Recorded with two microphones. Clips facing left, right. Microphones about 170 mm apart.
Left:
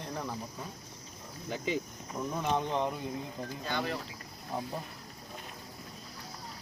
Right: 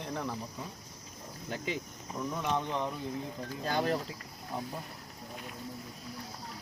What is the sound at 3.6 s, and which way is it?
Speech, 40° right (ahead or behind).